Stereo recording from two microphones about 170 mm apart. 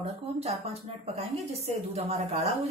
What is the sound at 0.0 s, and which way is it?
Speech, 35° right (ahead or behind).